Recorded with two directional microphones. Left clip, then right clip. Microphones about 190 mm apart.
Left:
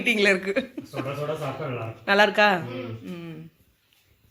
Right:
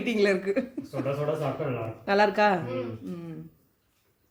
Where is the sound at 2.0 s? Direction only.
5° right (ahead or behind).